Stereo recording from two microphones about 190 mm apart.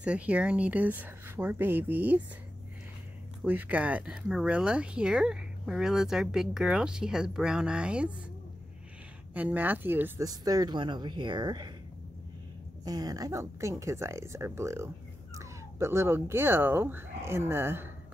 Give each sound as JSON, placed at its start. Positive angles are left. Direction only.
{"t": 0.0, "sound": "speech", "side_deg": -5}
{"t": 3.4, "sound": "speech", "side_deg": -10}
{"t": 9.3, "sound": "speech", "side_deg": -10}
{"t": 12.8, "sound": "speech", "side_deg": -20}